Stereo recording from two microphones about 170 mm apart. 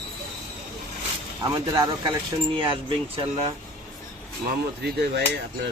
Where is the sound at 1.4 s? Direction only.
20° right (ahead or behind).